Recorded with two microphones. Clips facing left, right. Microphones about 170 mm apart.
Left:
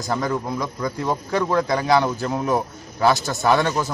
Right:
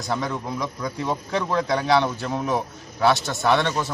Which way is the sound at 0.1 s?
Centre (ahead or behind).